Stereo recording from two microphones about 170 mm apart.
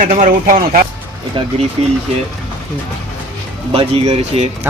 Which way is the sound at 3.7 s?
40° right (ahead or behind).